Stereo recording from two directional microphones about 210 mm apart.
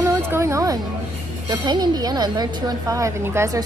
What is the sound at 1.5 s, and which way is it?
A woman's voice, 20° right (ahead or behind).